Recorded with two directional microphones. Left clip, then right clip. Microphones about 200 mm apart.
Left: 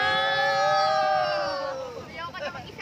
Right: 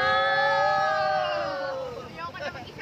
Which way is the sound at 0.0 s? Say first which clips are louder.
Right 1 dB; 50° left (ahead or behind).